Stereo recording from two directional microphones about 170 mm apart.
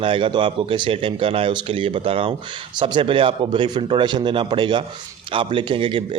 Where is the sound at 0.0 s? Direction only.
30° right (ahead or behind).